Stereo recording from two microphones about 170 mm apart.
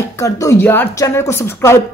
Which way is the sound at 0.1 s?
20° left (ahead or behind).